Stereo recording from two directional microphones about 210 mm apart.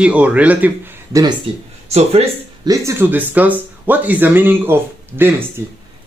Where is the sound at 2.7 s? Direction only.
10° right (ahead or behind).